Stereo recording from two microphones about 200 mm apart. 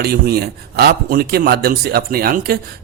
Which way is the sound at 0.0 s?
50° right (ahead or behind).